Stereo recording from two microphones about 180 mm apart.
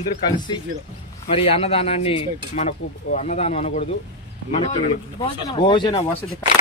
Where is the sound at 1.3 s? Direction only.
30° left (ahead or behind).